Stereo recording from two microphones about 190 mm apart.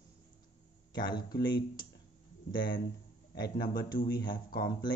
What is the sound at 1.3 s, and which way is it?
Speech, 65° left (ahead or behind).